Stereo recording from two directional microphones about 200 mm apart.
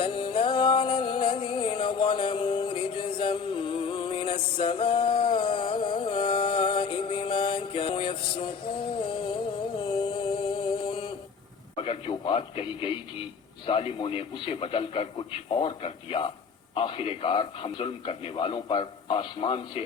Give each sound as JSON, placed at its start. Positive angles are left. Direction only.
{"t": 0.0, "sound": "music", "side_deg": 25}
{"t": 9.8, "sound": "a sound", "side_deg": 25}
{"t": 11.8, "sound": "a man's voice", "side_deg": 25}